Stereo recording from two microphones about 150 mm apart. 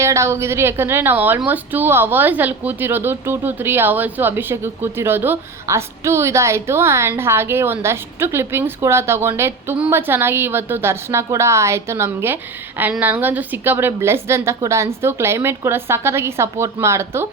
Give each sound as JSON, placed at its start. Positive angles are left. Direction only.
{"t": 0.0, "sound": "a woman's voice", "side_deg": -20}